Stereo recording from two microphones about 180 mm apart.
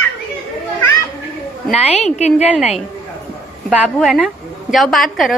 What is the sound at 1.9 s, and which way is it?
Speech, 35° left (ahead or behind).